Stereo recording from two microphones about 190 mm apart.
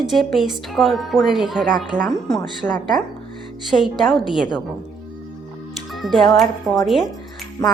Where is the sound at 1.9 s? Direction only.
45° right (ahead or behind).